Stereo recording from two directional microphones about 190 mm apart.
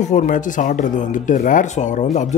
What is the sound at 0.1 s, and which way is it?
Speech, 40° left (ahead or behind).